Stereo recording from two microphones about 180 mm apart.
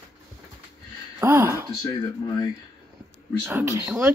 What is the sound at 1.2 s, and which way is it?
Speech, 15° right (ahead or behind).